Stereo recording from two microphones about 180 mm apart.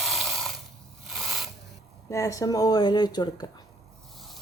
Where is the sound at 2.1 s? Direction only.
20° left (ahead or behind).